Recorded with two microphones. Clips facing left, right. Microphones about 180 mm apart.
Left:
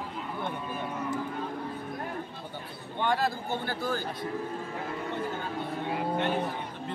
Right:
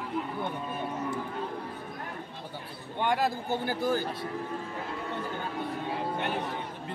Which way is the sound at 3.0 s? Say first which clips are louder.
Even; 15° right (ahead or behind).